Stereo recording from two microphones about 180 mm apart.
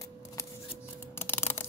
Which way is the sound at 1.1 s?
10° left (ahead or behind).